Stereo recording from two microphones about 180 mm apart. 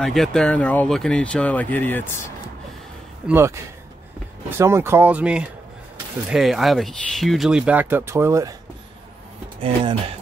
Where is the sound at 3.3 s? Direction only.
15° right (ahead or behind).